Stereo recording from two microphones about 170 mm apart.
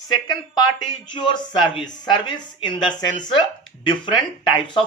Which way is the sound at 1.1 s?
25° left (ahead or behind).